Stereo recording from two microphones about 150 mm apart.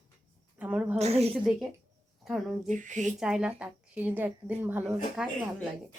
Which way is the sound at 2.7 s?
55° right (ahead or behind).